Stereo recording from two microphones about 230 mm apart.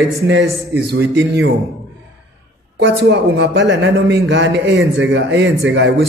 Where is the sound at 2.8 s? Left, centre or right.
Right.